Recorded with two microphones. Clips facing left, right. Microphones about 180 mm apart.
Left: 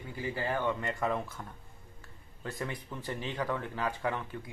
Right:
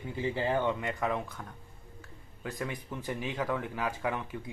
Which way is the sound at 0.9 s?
Centre (ahead or behind).